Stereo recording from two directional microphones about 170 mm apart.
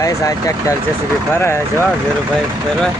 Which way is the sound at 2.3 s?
Centre (ahead or behind).